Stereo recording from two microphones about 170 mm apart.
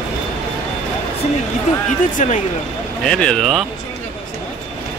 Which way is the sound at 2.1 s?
45° left (ahead or behind).